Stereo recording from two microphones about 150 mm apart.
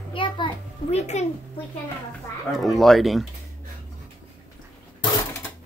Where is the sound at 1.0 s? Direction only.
50° left (ahead or behind).